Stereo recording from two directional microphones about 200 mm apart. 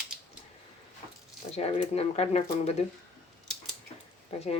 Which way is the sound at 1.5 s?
30° left (ahead or behind).